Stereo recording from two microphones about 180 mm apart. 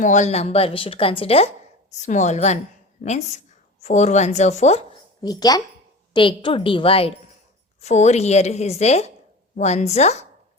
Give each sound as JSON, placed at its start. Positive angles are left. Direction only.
{"t": 0.0, "sound": "speech", "side_deg": 40}
{"t": 5.2, "sound": "a woman's voice", "side_deg": 20}